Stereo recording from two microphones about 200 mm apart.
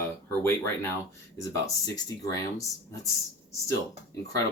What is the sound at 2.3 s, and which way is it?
Speech, 15° left (ahead or behind).